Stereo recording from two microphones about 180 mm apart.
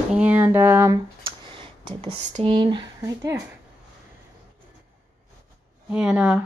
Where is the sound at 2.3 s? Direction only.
30° right (ahead or behind).